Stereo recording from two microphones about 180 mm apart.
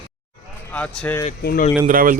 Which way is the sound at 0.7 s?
10° left (ahead or behind).